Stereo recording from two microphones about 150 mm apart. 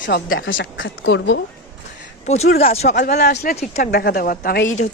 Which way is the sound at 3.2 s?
90° left.